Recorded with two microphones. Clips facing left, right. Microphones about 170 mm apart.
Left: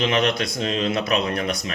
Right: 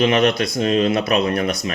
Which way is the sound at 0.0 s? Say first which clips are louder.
Right 5 dB; 55° right (ahead or behind).